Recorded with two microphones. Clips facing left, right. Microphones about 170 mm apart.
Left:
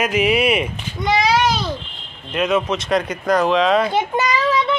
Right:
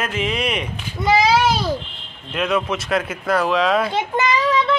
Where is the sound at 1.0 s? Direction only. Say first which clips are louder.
Right 1 dB; 5° right (ahead or behind).